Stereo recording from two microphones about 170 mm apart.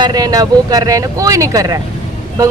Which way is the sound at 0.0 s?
25° right (ahead or behind).